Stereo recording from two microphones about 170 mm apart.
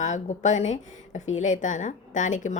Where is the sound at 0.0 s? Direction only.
45° left (ahead or behind).